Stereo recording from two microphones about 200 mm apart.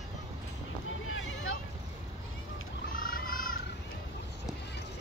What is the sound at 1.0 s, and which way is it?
Boat, 90° left.